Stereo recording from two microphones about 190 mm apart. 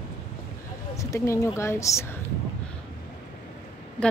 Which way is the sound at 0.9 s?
15° left (ahead or behind).